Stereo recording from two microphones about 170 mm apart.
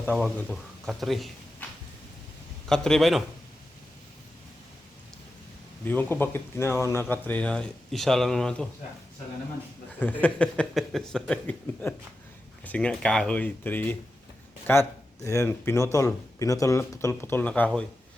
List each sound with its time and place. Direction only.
0.0 s speech: 5° left (ahead or behind)
1.6 s a sound: 10° left (ahead or behind)
2.6 s speech: 5° left (ahead or behind)
5.8 s speech: 10° left (ahead or behind)
10.0 s speech: 10° left (ahead or behind)